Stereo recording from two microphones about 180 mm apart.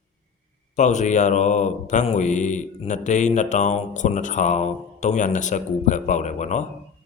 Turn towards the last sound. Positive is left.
turn(degrees=40)  # may be behind; listen again after turning